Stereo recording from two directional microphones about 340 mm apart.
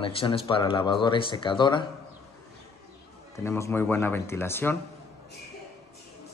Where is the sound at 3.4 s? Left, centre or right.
Centre.